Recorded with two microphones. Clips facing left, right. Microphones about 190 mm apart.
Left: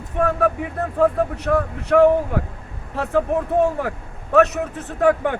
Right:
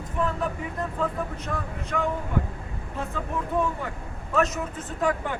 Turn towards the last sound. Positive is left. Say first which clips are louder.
# left 8 dB
turn(degrees=65)  # may be behind; listen again after turning